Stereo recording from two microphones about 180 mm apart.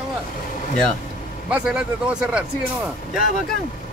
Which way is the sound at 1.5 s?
5° right (ahead or behind).